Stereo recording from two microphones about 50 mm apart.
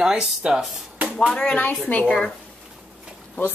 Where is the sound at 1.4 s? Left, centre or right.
Left.